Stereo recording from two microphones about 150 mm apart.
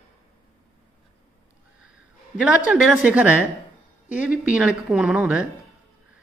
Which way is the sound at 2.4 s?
5° right (ahead or behind).